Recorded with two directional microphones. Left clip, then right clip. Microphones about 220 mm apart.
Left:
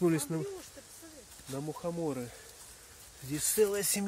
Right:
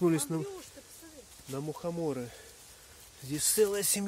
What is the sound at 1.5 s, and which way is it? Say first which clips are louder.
Speech: right 1 dB; 20° right (ahead or behind).